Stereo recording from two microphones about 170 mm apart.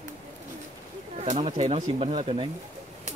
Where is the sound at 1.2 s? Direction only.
45° right (ahead or behind).